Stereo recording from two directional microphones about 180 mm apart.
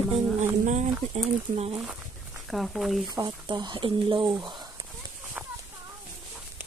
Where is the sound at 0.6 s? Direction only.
40° right (ahead or behind).